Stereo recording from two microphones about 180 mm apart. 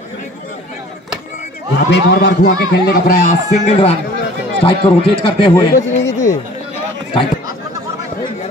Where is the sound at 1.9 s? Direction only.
75° left (ahead or behind); by 3.9 s 35° left (ahead or behind).